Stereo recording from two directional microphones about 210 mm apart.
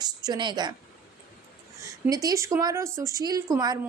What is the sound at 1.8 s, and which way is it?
A woman's voice, 15° right (ahead or behind).